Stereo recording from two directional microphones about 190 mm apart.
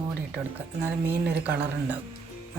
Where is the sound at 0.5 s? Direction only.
10° right (ahead or behind).